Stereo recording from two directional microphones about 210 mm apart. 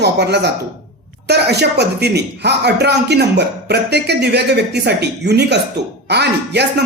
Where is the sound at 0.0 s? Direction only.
55° right (ahead or behind).